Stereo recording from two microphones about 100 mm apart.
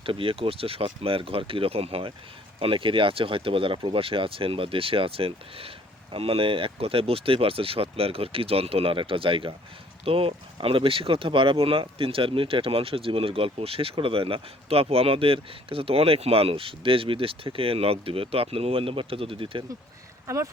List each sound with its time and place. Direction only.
0.0 s speech: 65° right (ahead or behind)
20.2 s speech: 30° right (ahead or behind)